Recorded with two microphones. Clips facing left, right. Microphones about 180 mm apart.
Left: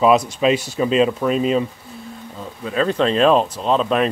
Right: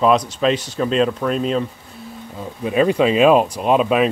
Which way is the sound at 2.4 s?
15° right (ahead or behind).